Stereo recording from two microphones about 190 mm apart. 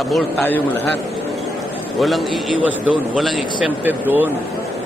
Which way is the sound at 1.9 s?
Centre (ahead or behind).